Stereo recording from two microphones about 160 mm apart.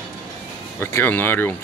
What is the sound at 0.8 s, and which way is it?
Speech, 10° left (ahead or behind).